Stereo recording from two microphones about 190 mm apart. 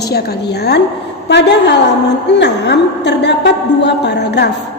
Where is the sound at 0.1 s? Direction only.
60° left (ahead or behind).